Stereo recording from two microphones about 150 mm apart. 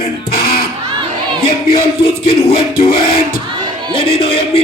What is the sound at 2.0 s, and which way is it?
Speech, 40° left (ahead or behind).